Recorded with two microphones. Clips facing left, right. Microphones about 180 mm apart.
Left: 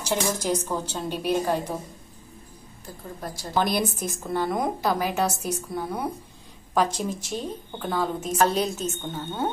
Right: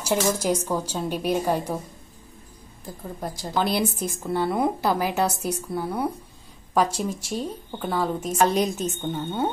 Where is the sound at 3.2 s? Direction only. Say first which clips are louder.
Even; 15° right (ahead or behind).